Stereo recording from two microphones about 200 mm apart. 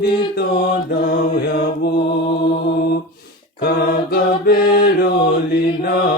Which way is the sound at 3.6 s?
50° left (ahead or behind).